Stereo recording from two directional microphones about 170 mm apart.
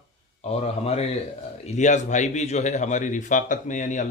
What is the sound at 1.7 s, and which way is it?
A man's voice, 45° left (ahead or behind).